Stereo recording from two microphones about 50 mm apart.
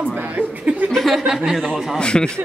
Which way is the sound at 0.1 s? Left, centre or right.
Right.